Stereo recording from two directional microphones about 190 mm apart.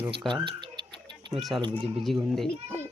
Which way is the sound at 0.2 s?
25° right (ahead or behind).